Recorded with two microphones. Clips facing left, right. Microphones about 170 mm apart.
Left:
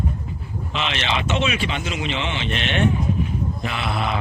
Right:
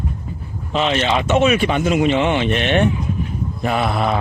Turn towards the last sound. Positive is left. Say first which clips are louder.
# right 7 dB
turn(degrees=-45)  # may be behind; listen again after turning